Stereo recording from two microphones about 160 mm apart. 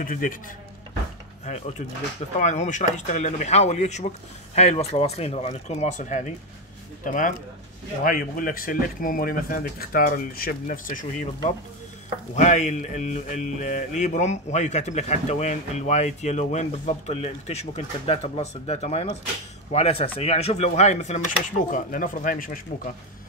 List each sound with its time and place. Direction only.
0.0 s speech: 60° left (ahead or behind)
1.5 s speech: 45° left (ahead or behind)
12.4 s speech: 50° left (ahead or behind)